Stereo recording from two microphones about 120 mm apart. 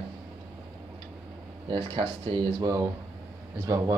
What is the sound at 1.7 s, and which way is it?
Speech, 40° right (ahead or behind).